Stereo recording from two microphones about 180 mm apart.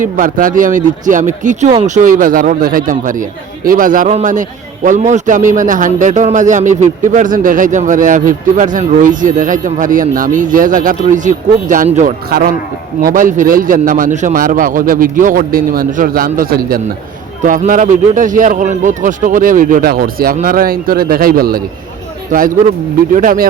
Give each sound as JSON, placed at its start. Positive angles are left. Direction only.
{"t": 0.0, "sound": "speech", "side_deg": -50}